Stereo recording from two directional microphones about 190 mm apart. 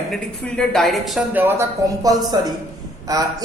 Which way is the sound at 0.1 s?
5° left (ahead or behind).